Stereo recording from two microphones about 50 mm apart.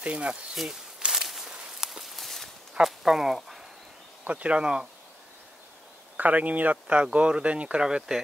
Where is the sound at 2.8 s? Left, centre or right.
Centre.